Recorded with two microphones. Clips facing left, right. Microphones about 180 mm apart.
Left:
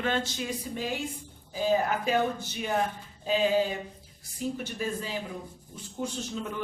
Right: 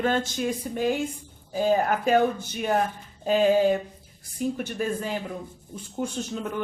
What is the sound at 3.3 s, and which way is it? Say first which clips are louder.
Speech: right 5 dB; 50° right (ahead or behind).